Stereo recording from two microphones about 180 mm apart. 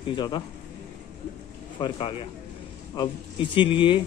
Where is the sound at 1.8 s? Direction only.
30° left (ahead or behind).